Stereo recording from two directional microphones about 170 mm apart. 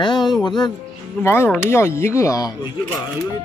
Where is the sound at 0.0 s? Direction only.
25° left (ahead or behind).